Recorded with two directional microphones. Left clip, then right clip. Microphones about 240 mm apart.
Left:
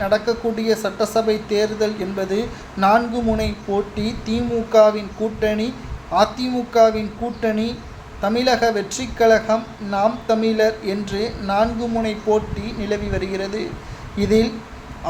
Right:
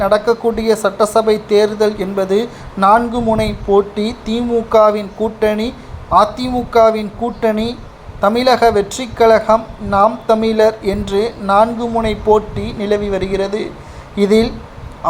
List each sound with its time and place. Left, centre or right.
0.0 s speech: centre